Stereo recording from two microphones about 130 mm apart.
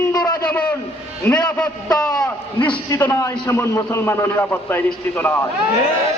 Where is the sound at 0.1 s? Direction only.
30° left (ahead or behind).